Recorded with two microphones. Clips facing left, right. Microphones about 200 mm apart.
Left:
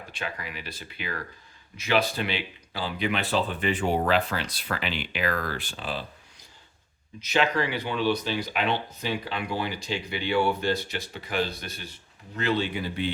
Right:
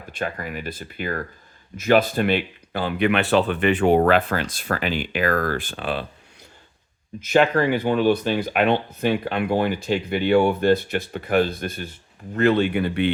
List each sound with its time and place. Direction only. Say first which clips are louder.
0.1 s speech: right 9 dB; 50° right (ahead or behind)
7.2 s speech: right 7 dB; 50° right (ahead or behind)